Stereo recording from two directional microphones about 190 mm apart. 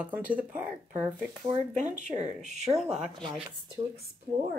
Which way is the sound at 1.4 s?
40° right (ahead or behind).